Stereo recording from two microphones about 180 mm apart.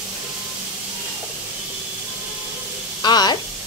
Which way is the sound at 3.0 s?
25° left (ahead or behind).